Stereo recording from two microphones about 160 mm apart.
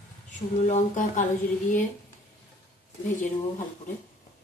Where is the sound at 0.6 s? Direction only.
50° left (ahead or behind).